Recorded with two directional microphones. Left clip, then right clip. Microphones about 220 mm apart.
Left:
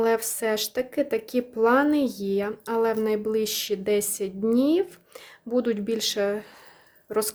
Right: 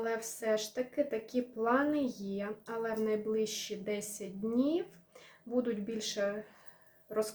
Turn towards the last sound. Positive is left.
turn(degrees=50)  # may be behind; listen again after turning